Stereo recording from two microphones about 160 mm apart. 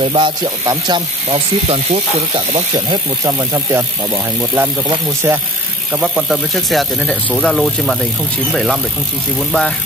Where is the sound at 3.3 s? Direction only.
20° right (ahead or behind).